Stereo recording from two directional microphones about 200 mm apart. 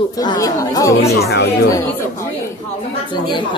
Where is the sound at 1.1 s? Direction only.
55° left (ahead or behind).